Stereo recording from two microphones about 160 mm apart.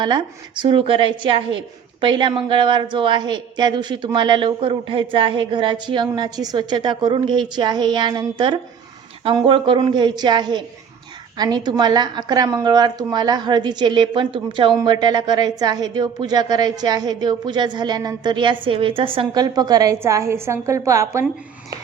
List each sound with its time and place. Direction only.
0.6 s a woman's voice: 35° right (ahead or behind); by 21.2 s 20° right (ahead or behind)